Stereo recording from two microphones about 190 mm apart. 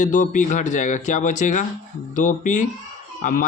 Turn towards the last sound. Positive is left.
turn(degrees=45)  # may be behind; listen again after turning